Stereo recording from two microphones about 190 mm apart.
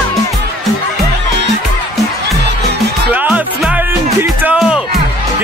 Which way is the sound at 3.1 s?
5° right (ahead or behind).